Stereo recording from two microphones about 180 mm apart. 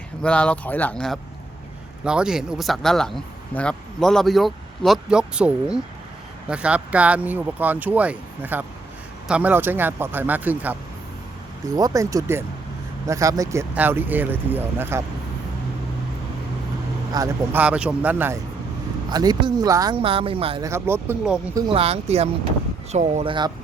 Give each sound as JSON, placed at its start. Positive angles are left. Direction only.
{"t": 0.2, "sound": "speech", "side_deg": 5}
{"t": 17.2, "sound": "speech", "side_deg": -20}
{"t": 17.5, "sound": "speech", "side_deg": -5}
{"t": 19.1, "sound": "speech", "side_deg": -20}
{"t": 20.6, "sound": "speech", "side_deg": -15}
{"t": 21.7, "sound": "speech", "side_deg": -35}